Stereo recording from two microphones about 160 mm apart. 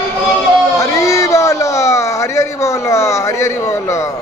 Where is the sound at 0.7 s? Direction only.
20° left (ahead or behind).